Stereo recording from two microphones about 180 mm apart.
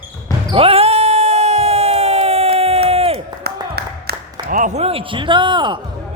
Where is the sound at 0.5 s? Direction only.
35° right (ahead or behind).